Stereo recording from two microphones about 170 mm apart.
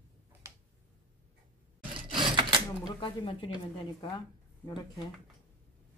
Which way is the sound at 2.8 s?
30° left (ahead or behind).